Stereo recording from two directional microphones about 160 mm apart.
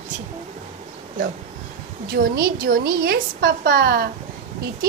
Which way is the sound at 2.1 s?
65° right (ahead or behind).